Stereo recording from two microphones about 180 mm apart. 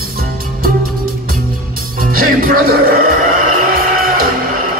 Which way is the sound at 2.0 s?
50° right (ahead or behind).